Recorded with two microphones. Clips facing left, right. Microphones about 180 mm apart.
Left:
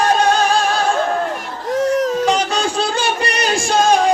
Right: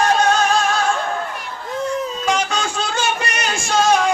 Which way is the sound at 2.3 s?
35° left (ahead or behind).